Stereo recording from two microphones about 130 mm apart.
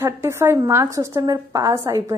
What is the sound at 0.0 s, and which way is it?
A woman's voice, 20° right (ahead or behind).